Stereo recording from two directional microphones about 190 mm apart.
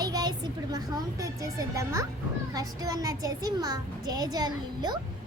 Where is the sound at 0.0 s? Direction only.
20° right (ahead or behind).